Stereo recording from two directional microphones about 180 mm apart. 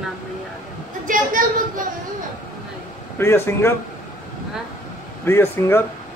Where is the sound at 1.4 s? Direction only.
50° right (ahead or behind).